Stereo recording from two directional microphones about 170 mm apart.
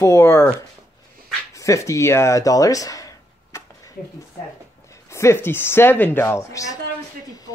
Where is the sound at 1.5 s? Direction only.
20° left (ahead or behind).